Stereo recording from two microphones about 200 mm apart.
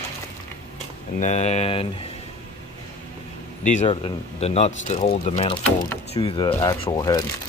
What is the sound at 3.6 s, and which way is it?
Speech, 35° left (ahead or behind).